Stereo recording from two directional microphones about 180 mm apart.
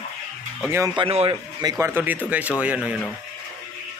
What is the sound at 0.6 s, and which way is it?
Speech, 15° right (ahead or behind).